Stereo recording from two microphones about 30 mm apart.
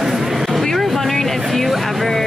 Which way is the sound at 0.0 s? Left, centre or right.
Centre.